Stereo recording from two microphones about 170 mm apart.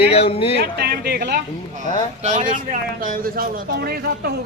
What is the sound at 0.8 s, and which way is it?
Speech, 70° right (ahead or behind).